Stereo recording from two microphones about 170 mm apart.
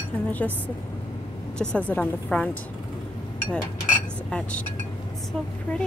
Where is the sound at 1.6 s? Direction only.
5° left (ahead or behind).